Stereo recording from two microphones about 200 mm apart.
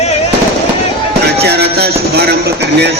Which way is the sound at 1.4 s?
55° right (ahead or behind).